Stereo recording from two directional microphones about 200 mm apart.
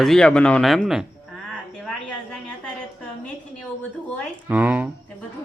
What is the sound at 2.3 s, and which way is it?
Speech, 5° left (ahead or behind).